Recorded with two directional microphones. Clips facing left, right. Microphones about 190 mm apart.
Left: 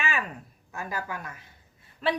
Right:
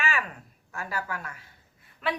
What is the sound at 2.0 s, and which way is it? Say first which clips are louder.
Speech: left 3 dB; 30° left (ahead or behind).